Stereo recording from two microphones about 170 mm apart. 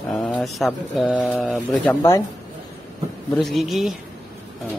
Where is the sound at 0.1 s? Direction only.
Centre (ahead or behind).